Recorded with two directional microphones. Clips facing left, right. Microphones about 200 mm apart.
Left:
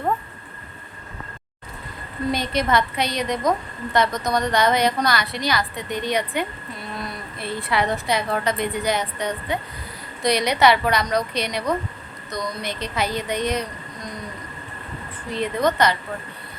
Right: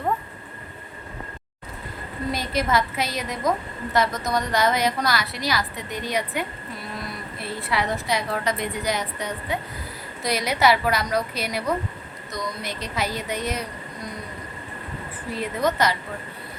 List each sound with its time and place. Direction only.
2.3 s a woman's voice: 5° right (ahead or behind)
15.3 s a woman's voice: 5° right (ahead or behind)